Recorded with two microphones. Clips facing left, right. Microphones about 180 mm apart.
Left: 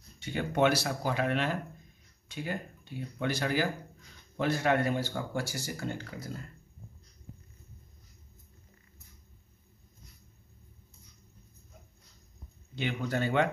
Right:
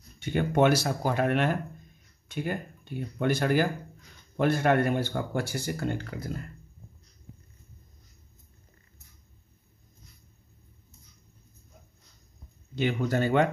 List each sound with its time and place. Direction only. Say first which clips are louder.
0.2 s a man's voice: right 4 dB; 55° right (ahead or behind)
12.7 s speech: right 5 dB; 40° right (ahead or behind)